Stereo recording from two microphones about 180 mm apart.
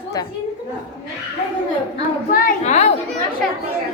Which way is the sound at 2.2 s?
50° left (ahead or behind).